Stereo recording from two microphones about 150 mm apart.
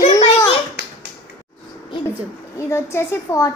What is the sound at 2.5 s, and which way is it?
Speech, 20° left (ahead or behind).